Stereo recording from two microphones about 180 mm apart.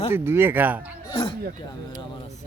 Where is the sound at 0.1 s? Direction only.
15° right (ahead or behind).